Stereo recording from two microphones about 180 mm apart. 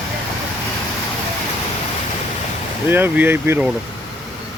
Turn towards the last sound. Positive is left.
turn(degrees=-10)  # may be behind; listen again after turning